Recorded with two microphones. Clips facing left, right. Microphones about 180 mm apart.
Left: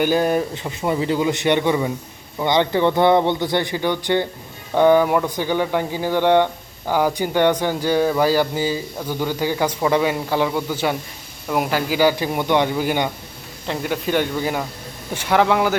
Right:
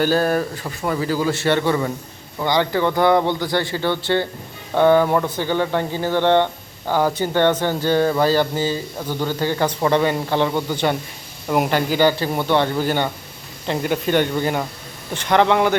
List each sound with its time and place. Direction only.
0.0 s a man's voice: 15° left (ahead or behind)
13.7 s speech: centre (ahead or behind)